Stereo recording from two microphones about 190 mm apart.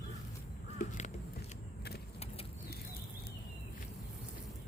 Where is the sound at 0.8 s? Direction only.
40° left (ahead or behind).